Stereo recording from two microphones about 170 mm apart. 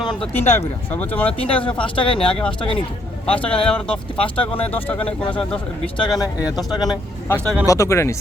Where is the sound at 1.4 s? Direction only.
30° left (ahead or behind).